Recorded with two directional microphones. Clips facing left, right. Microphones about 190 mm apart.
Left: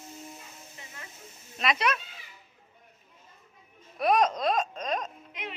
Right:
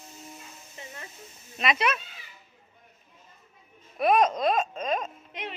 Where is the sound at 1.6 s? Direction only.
5° right (ahead or behind).